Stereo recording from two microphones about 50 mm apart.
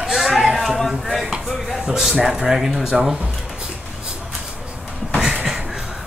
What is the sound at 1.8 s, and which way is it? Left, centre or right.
Speech, centre.